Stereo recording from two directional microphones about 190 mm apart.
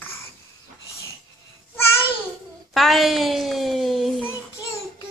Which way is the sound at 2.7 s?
Centre (ahead or behind).